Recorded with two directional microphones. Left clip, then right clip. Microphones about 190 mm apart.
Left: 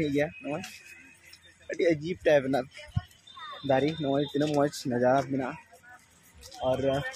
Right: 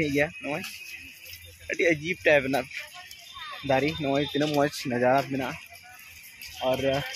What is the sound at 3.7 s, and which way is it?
Speech, 5° right (ahead or behind).